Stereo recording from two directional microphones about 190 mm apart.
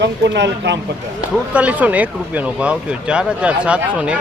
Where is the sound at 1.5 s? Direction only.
5° right (ahead or behind).